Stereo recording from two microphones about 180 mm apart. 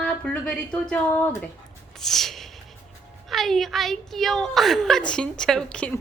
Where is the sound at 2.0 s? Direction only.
Centre (ahead or behind).